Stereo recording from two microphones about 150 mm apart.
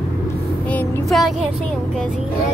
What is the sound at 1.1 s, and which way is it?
Speech, centre (ahead or behind).